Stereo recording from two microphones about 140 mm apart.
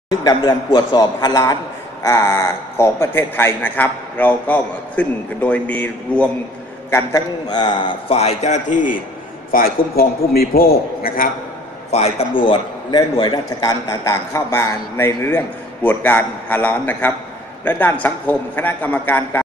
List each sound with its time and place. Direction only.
0.5 s a man's voice: 30° left (ahead or behind); by 6.2 s 10° left (ahead or behind)
6.9 s a man's voice: 20° left (ahead or behind); by 9.0 s 70° left (ahead or behind)
9.5 s a man's voice: 90° left
11.9 s a man's voice: 50° left (ahead or behind); by 19.4 s 15° left (ahead or behind)